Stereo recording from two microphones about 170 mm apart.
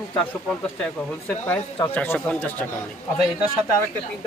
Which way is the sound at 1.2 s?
10° left (ahead or behind).